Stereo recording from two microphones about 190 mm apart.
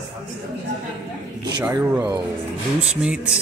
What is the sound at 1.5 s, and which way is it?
Speech, 20° right (ahead or behind).